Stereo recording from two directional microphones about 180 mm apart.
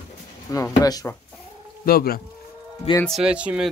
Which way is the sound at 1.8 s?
55° left (ahead or behind).